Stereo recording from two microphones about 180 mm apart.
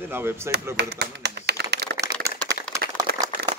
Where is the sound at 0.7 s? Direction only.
70° right (ahead or behind).